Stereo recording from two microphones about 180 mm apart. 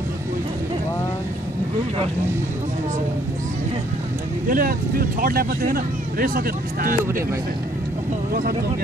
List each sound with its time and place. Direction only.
4.5 s speech: 50° right (ahead or behind)